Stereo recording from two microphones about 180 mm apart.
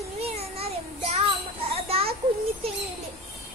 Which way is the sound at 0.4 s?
35° right (ahead or behind).